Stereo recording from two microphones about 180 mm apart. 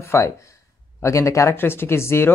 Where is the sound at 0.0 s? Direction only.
15° left (ahead or behind).